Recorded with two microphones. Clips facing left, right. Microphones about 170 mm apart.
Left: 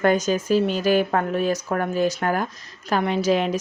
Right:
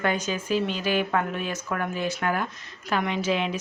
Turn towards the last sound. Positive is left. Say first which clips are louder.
# left 5 dB
turn(degrees=40)  # may be behind; listen again after turning